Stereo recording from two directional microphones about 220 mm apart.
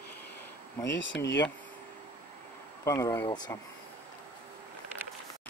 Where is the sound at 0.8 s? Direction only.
55° left (ahead or behind).